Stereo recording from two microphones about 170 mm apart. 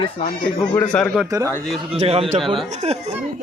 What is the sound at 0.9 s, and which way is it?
Speech, 5° left (ahead or behind).